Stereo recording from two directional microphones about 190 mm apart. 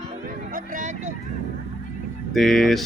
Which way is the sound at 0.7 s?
40° right (ahead or behind).